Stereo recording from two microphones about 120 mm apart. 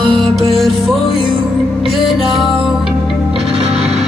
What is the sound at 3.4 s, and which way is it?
Music, 60° right (ahead or behind).